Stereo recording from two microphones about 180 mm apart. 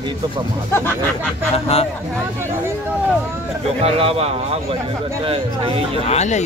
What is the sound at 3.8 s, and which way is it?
Speech, 35° right (ahead or behind).